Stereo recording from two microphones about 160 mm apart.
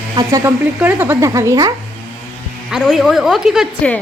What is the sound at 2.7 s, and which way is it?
Speech, centre (ahead or behind).